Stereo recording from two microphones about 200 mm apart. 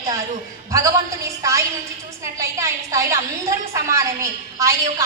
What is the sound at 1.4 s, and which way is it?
A woman's voice, 15° right (ahead or behind).